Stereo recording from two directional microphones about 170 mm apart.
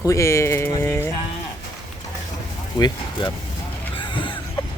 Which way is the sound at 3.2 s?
30° left (ahead or behind).